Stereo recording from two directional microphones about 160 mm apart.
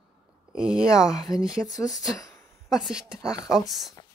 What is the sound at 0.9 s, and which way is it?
Speech, 20° left (ahead or behind).